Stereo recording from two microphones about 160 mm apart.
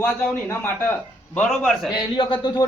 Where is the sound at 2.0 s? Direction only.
30° left (ahead or behind).